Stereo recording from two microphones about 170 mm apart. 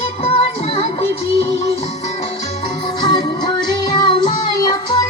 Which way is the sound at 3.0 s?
25° left (ahead or behind).